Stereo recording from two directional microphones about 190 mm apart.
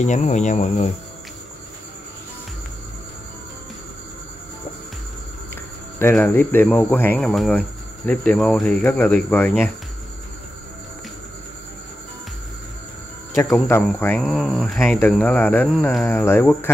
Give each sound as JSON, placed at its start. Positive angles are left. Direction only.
{"t": 0.0, "sound": "speech", "side_deg": 40}
{"t": 5.5, "sound": "speech", "side_deg": 10}
{"t": 13.8, "sound": "speech", "side_deg": 10}
{"t": 14.3, "sound": "speech", "side_deg": 0}